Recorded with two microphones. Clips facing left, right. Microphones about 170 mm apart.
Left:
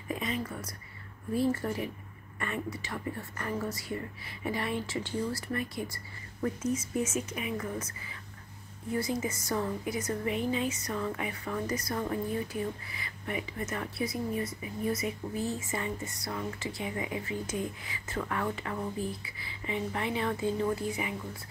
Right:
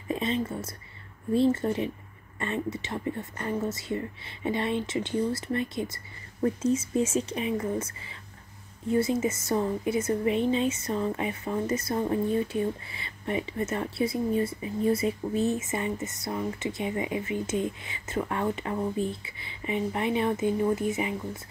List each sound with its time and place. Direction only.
0.1 s a woman's voice: 25° right (ahead or behind)